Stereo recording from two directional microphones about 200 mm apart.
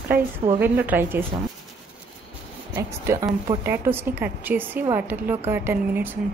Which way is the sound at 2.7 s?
15° right (ahead or behind).